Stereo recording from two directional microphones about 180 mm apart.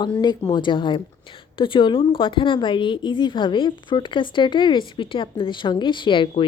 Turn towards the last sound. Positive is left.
turn(degrees=30)  # may be behind; listen again after turning